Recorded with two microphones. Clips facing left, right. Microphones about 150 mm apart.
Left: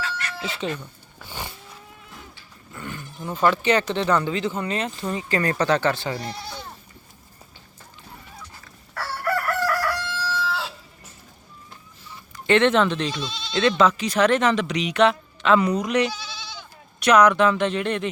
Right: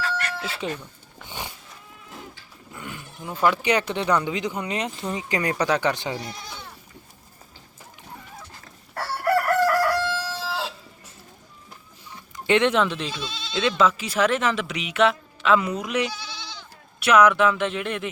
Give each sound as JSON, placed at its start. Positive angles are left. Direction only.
{"t": 0.0, "sound": "a sound", "side_deg": -60}
{"t": 0.6, "sound": "speech", "side_deg": -10}
{"t": 1.2, "sound": "vehicle", "side_deg": -15}
{"t": 2.7, "sound": "dog", "side_deg": -10}
{"t": 3.4, "sound": "speech", "side_deg": -10}
{"t": 9.0, "sound": "chicken", "side_deg": -40}
{"t": 9.9, "sound": "crowing", "side_deg": -45}
{"t": 12.5, "sound": "speech", "side_deg": -10}